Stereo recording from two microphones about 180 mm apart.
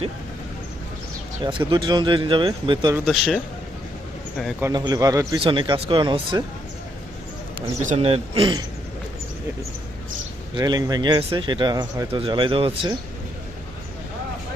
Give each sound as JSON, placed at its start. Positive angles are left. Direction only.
{"t": 1.5, "sound": "speech", "side_deg": -25}
{"t": 3.1, "sound": "speech", "side_deg": 0}
{"t": 4.6, "sound": "speech", "side_deg": -25}
{"t": 7.9, "sound": "speech", "side_deg": -35}
{"t": 10.5, "sound": "speech", "side_deg": -25}